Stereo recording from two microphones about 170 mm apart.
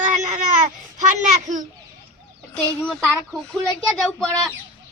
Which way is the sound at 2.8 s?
5° right (ahead or behind).